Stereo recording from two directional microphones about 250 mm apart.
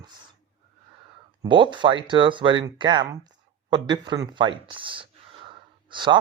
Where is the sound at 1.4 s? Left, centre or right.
Centre.